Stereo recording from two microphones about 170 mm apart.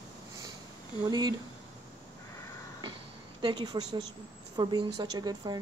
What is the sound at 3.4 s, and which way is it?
A woman's voice, 25° right (ahead or behind).